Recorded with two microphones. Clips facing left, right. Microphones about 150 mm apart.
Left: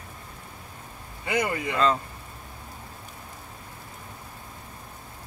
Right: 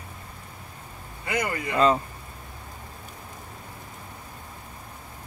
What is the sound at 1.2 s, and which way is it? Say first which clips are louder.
Speech: left 2 dB; 20° left (ahead or behind).